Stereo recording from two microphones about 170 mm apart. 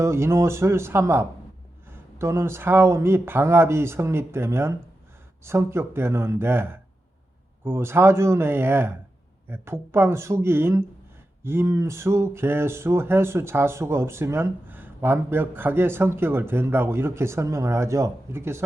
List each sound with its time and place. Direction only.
0.0 s speech: 15° right (ahead or behind)